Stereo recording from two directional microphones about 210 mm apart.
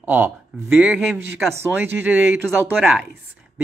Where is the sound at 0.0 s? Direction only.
10° right (ahead or behind).